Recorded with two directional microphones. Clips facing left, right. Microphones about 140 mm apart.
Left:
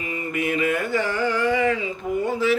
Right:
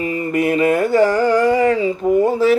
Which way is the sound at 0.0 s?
35° right (ahead or behind).